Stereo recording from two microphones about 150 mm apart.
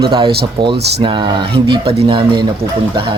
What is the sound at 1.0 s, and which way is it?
Speech, 35° right (ahead or behind).